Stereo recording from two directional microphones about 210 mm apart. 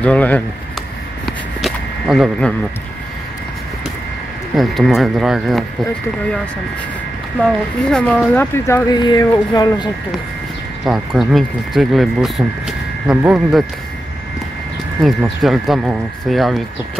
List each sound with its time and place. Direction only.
0.0 s speech: 5° left (ahead or behind)
1.2 s a sound: centre (ahead or behind)
4.6 s speech: centre (ahead or behind)
7.4 s speech: centre (ahead or behind); by 9.8 s 15° left (ahead or behind)
10.9 s speech: centre (ahead or behind)
15.0 s speech: centre (ahead or behind)